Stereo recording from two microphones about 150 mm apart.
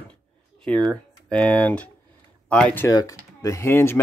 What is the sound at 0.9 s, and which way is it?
Speech, 5° left (ahead or behind).